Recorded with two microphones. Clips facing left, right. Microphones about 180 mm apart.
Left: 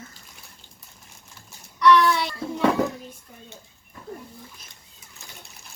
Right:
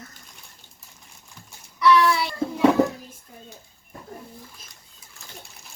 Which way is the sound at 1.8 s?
5° right (ahead or behind).